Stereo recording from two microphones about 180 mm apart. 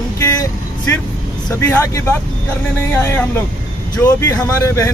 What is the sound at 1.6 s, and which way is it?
Speech, 15° left (ahead or behind).